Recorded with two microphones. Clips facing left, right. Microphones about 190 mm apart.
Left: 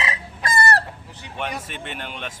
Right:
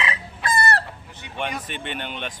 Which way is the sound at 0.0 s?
40° left (ahead or behind).